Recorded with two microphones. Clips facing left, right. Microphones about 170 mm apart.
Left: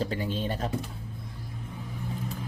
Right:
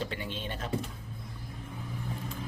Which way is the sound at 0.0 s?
40° left (ahead or behind).